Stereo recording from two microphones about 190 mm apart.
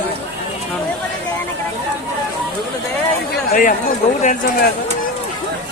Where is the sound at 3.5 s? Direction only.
45° left (ahead or behind).